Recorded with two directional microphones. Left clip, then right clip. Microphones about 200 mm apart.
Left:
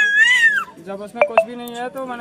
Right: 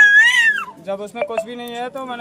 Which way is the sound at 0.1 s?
25° right (ahead or behind).